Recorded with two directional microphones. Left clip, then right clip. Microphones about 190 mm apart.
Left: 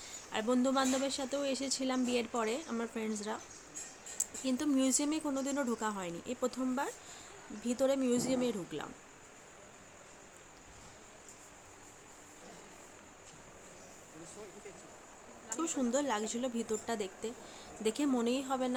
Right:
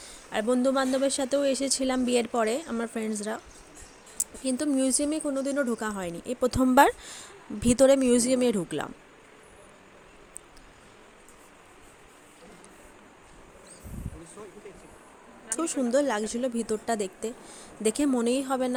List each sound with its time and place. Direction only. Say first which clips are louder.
0.0 s speech: right 7 dB; 30° right (ahead or behind)
6.7 s speech: right 19 dB; 55° right (ahead or behind)
15.5 s speech: right 9 dB; 30° right (ahead or behind)